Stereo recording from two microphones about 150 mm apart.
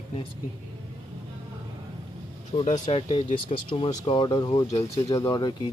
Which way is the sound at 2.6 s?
40° left (ahead or behind).